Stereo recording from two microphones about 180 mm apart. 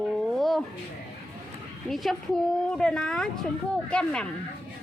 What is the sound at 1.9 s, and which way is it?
A woman's voice, centre (ahead or behind).